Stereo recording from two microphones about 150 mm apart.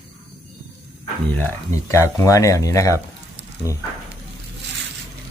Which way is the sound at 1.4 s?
20° left (ahead or behind).